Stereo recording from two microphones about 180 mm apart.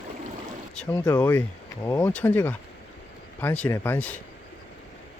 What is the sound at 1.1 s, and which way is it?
Speech, 10° left (ahead or behind).